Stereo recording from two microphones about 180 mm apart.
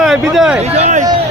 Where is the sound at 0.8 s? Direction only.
40° right (ahead or behind).